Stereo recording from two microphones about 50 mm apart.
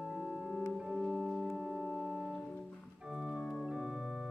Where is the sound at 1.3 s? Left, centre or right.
Centre.